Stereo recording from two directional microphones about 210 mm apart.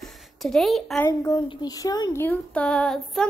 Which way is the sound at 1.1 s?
15° left (ahead or behind).